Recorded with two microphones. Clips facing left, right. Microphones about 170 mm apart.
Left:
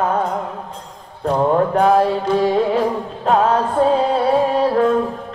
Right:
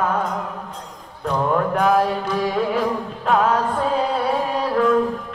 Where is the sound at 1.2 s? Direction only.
30° left (ahead or behind).